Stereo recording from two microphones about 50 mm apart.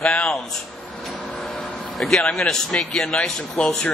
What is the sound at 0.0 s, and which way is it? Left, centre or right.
Speech, centre.